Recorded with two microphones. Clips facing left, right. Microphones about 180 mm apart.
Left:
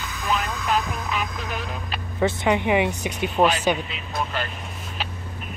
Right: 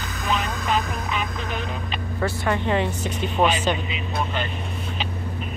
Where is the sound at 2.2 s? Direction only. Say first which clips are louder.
Left 3 dB; 20° left (ahead or behind).